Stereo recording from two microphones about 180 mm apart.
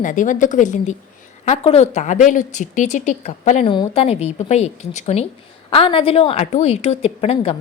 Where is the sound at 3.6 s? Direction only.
25° left (ahead or behind).